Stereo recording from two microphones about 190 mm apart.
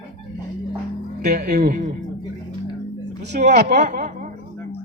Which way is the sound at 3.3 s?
40° right (ahead or behind).